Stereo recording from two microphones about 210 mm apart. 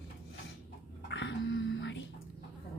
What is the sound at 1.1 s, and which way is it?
Whispering, 60° left (ahead or behind).